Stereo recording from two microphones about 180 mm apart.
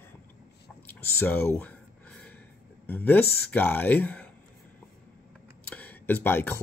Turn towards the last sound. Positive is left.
turn(degrees=10)  # may be behind; listen again after turning